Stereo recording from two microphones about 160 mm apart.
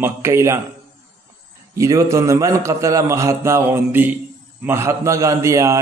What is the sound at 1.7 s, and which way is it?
A man's voice, 20° right (ahead or behind).